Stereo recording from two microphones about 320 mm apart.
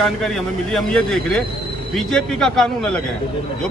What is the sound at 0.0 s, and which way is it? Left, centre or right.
Speech, centre.